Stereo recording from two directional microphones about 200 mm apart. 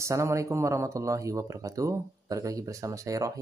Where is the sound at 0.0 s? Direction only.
15° right (ahead or behind).